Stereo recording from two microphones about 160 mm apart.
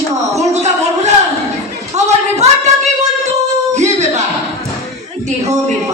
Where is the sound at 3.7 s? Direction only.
45° right (ahead or behind).